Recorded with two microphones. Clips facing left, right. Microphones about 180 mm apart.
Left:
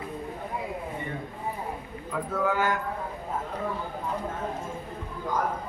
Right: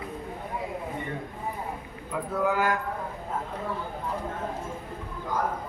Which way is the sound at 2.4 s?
10° right (ahead or behind).